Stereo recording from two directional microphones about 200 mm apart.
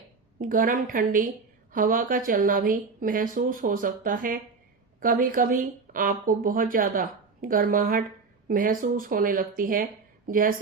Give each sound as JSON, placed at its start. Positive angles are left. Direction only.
{"t": 0.3, "sound": "a woman's voice", "side_deg": -45}